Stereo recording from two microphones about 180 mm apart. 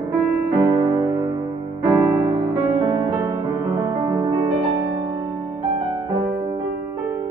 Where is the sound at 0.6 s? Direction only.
25° right (ahead or behind).